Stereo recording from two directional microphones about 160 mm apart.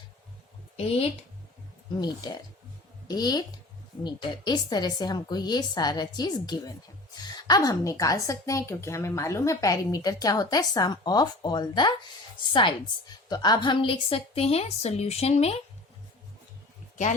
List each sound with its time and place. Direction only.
0.8 s a woman's voice: 40° left (ahead or behind)
2.0 s a woman's voice: 25° left (ahead or behind)
13.2 s a woman's voice: 25° left (ahead or behind)